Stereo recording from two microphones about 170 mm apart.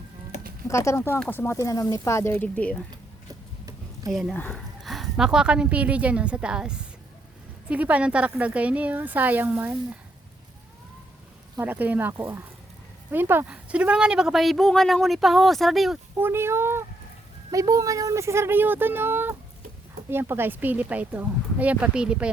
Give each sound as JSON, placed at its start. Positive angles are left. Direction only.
{"t": 0.7, "sound": "speech", "side_deg": 15}
{"t": 4.1, "sound": "speech", "side_deg": 0}
{"t": 4.4, "sound": "speech", "side_deg": 10}
{"t": 4.8, "sound": "a woman's voice", "side_deg": 0}
{"t": 11.5, "sound": "speech", "side_deg": -10}
{"t": 16.1, "sound": "speech", "side_deg": -15}